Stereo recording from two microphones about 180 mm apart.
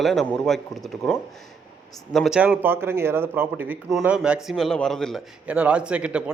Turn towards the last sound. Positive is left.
turn(degrees=-5)  # may be behind; listen again after turning